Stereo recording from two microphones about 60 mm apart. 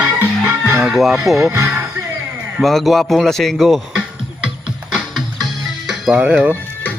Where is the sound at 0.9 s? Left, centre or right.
Centre.